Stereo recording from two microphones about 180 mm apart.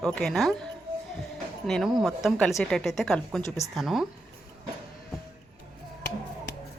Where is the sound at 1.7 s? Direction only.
Centre (ahead or behind).